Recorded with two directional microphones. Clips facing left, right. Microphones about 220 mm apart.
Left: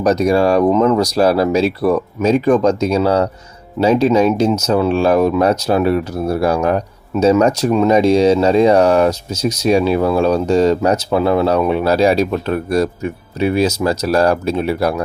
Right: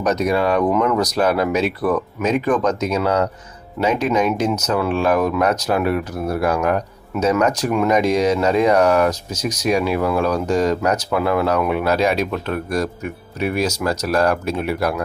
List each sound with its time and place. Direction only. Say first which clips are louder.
0.0 s speech: left 5 dB; 30° left (ahead or behind)